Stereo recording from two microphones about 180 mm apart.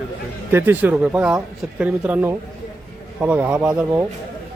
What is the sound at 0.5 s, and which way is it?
A man's voice, 10° right (ahead or behind).